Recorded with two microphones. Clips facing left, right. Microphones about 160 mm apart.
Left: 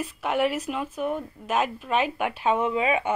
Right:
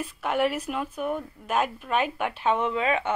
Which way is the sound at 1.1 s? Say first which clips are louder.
Right 1 dB; 5° left (ahead or behind).